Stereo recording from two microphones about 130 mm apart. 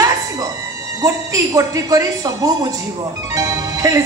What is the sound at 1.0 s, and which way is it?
A woman's voice, 25° right (ahead or behind).